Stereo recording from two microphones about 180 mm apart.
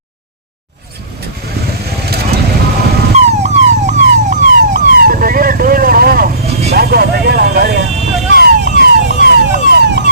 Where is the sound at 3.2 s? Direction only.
40° right (ahead or behind).